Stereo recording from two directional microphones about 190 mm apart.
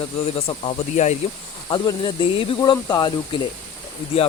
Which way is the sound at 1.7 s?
25° left (ahead or behind).